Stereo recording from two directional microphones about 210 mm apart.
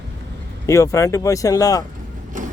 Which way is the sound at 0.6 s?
15° left (ahead or behind).